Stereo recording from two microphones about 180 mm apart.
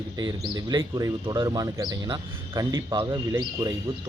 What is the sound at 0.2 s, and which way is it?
Speech, 20° right (ahead or behind).